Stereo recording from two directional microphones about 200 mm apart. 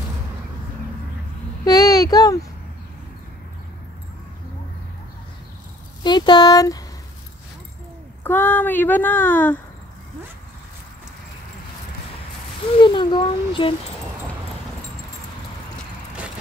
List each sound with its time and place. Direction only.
1.6 s a child's voice: 20° left (ahead or behind)
6.0 s speech: 20° left (ahead or behind)
8.2 s speech: 10° left (ahead or behind)
12.8 s a child's voice: 25° left (ahead or behind)